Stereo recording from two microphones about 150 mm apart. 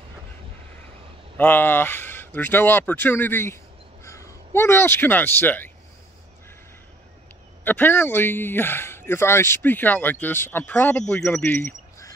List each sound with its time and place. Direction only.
1.3 s speech: 15° left (ahead or behind)
7.6 s speech: 10° left (ahead or behind)